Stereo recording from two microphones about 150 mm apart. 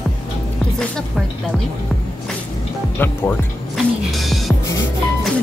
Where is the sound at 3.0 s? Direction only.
15° left (ahead or behind).